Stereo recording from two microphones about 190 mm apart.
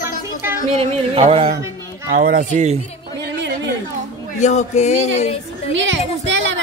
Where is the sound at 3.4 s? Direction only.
65° right (ahead or behind).